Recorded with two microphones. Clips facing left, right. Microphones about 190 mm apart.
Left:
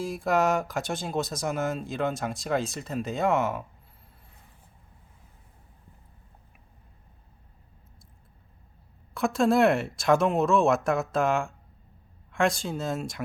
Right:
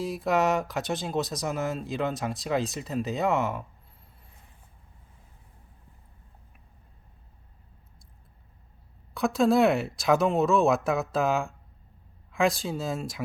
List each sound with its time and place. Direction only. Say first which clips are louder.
0.0 s speech: even; centre (ahead or behind)
9.1 s speech: even; centre (ahead or behind)